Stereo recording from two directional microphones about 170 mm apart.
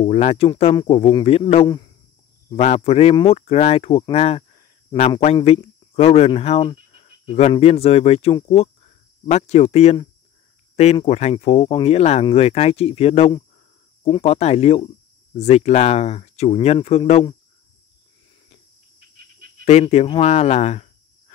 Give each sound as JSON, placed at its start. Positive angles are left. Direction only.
{"t": 0.0, "sound": "speech", "side_deg": 35}
{"t": 4.1, "sound": "a sound", "side_deg": 35}
{"t": 5.2, "sound": "speech", "side_deg": 35}
{"t": 18.9, "sound": "cricket", "side_deg": -60}
{"t": 19.6, "sound": "speech", "side_deg": 40}